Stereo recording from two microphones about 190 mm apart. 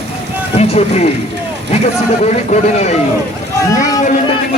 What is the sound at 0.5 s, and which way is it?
Speech, 35° left (ahead or behind).